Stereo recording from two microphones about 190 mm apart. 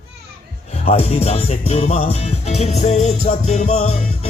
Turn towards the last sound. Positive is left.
turn(degrees=30)  # may be behind; listen again after turning